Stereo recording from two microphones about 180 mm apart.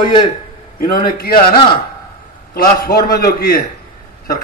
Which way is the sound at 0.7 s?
55° left (ahead or behind).